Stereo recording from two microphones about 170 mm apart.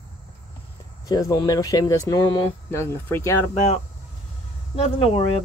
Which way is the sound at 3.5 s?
40° left (ahead or behind).